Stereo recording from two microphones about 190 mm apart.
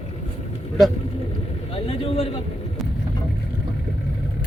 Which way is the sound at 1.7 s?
30° left (ahead or behind).